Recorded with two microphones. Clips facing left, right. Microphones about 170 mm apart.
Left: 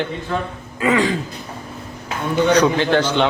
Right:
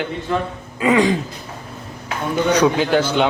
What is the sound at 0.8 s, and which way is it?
Speech, 20° right (ahead or behind).